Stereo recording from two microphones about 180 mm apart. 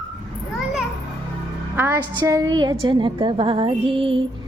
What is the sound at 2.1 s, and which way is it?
A woman's voice, 20° right (ahead or behind).